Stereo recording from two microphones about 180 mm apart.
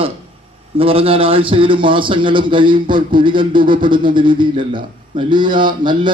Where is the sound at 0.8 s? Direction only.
30° right (ahead or behind).